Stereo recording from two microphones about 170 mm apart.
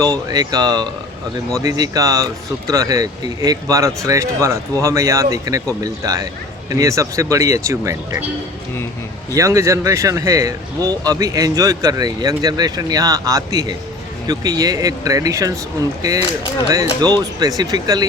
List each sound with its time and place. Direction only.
0.0 s speech: 20° right (ahead or behind)
9.3 s speech: 15° right (ahead or behind)
17.0 s speech: 20° right (ahead or behind)